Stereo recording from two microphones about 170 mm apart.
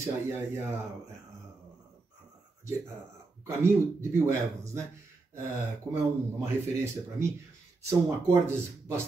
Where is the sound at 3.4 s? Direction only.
15° right (ahead or behind).